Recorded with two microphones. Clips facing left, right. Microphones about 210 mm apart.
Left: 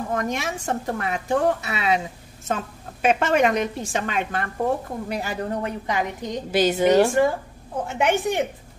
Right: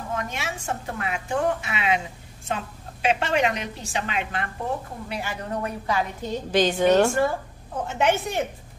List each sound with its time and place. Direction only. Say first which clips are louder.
0.1 s a woman's voice: left 3 dB; 45° left (ahead or behind)
5.6 s a woman's voice: left 1 dB; 15° left (ahead or behind)